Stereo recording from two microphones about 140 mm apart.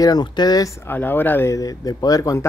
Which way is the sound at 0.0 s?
30° left (ahead or behind).